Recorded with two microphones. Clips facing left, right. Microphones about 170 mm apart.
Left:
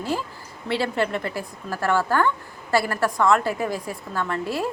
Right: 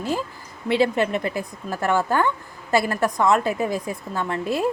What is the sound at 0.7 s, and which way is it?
A woman's voice, 20° right (ahead or behind).